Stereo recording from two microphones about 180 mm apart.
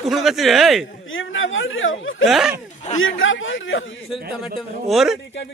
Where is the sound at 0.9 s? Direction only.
90° left.